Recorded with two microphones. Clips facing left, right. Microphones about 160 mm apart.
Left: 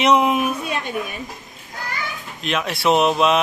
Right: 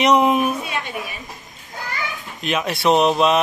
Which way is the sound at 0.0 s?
Centre (ahead or behind).